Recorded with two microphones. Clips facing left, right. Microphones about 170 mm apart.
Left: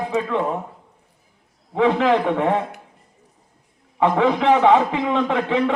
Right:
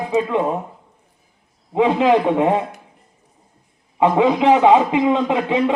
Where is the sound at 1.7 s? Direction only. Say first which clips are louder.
Right 2 dB; 15° right (ahead or behind).